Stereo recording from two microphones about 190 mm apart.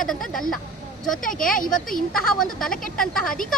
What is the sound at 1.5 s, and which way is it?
Speech, 45° left (ahead or behind).